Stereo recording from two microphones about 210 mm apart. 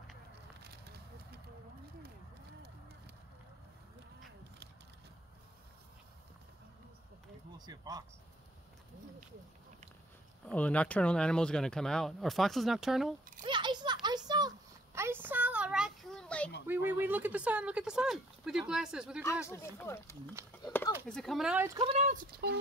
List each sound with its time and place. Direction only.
0.6 s a sound: 50° right (ahead or behind)
7.5 s speech: 20° right (ahead or behind)
10.4 s speech: 5° left (ahead or behind)
13.4 s a sound: 20° right (ahead or behind); by 16.5 s 5° left (ahead or behind)
17.0 s speech: 10° right (ahead or behind)
19.4 s speech: 10° left (ahead or behind)
20.6 s a sound: 15° left (ahead or behind)
21.1 s speech: centre (ahead or behind)
21.7 s speech: 30° right (ahead or behind)
22.4 s speech: 50° right (ahead or behind)